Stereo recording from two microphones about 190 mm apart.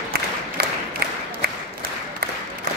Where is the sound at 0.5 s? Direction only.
55° right (ahead or behind).